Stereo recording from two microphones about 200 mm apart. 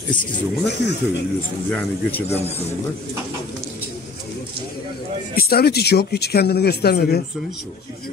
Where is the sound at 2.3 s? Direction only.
30° left (ahead or behind).